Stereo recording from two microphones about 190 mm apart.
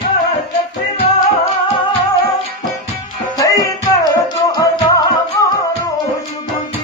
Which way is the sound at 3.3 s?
20° left (ahead or behind).